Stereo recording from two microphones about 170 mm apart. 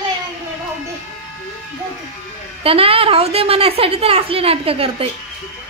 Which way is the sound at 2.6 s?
35° right (ahead or behind).